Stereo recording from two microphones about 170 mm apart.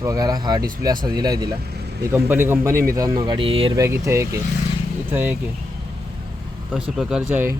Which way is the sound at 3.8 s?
15° right (ahead or behind).